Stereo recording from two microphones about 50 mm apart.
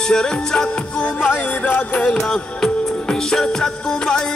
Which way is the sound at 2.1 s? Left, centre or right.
Centre.